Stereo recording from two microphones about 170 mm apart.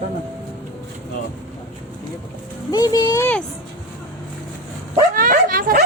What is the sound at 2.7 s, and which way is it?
Speech, 20° left (ahead or behind).